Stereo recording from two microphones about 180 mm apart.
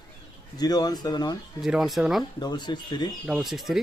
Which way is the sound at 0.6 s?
20° left (ahead or behind).